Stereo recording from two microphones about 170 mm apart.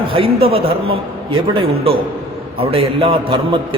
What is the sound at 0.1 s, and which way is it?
A man's voice, 35° right (ahead or behind).